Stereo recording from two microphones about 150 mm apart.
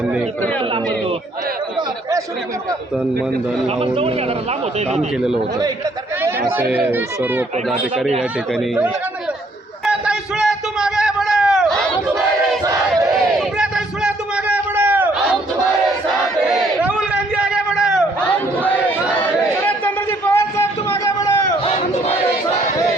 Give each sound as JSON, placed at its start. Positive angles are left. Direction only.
{"t": 3.8, "sound": "a man's voice", "side_deg": -40}
{"t": 4.9, "sound": "speech", "side_deg": -5}
{"t": 6.6, "sound": "speech", "side_deg": -10}
{"t": 7.7, "sound": "speech", "side_deg": 0}
{"t": 9.8, "sound": "a sound", "side_deg": -5}
{"t": 13.6, "sound": "a sound", "side_deg": -5}
{"t": 16.5, "sound": "a sound", "side_deg": -5}
{"t": 18.3, "sound": "chatter", "side_deg": 10}
{"t": 21.6, "sound": "crowd", "side_deg": 40}